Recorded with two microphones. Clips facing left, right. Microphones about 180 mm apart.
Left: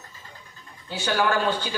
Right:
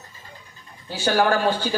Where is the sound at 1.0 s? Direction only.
35° right (ahead or behind).